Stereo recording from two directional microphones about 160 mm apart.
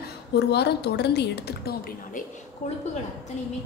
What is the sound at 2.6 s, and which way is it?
Speech, 50° left (ahead or behind).